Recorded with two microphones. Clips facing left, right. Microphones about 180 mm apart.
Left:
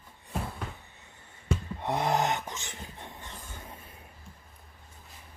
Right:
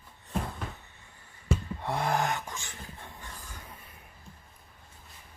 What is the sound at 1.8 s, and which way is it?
Dog, 20° left (ahead or behind).